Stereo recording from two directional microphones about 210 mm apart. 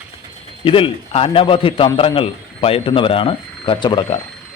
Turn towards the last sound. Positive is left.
turn(degrees=20)  # may be behind; listen again after turning